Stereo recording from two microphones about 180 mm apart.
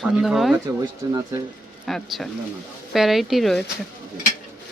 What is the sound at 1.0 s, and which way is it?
Speech, 25° right (ahead or behind).